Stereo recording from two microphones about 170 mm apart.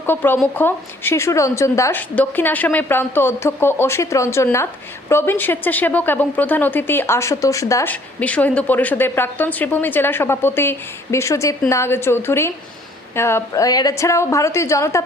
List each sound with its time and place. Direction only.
0.0 s a woman's voice: 10° left (ahead or behind)